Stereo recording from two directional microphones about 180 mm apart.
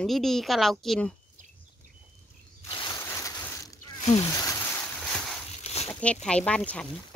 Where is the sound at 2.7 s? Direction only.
25° left (ahead or behind).